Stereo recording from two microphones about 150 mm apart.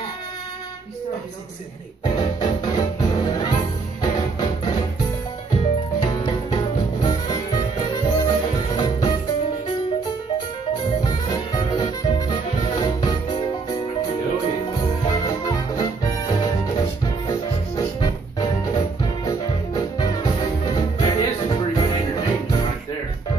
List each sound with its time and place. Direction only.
2.1 s music: 30° left (ahead or behind)
11.0 s music: 25° left (ahead or behind)
15.0 s music: 25° left (ahead or behind)